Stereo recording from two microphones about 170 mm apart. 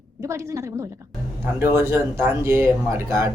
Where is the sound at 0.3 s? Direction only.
15° right (ahead or behind).